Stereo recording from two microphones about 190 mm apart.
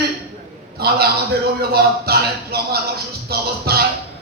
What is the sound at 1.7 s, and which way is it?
A man's voice, 55° right (ahead or behind).